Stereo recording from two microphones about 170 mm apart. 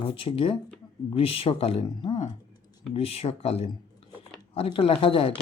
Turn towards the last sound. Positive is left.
turn(degrees=30)  # may be behind; listen again after turning